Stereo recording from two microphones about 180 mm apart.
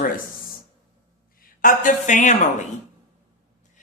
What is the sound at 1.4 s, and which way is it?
A woman's voice, 45° left (ahead or behind).